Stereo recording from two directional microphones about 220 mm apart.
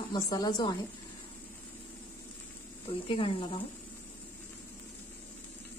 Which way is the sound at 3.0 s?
25° left (ahead or behind).